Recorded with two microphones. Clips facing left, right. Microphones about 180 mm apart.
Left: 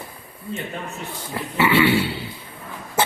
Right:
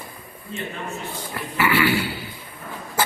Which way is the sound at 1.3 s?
25° left (ahead or behind).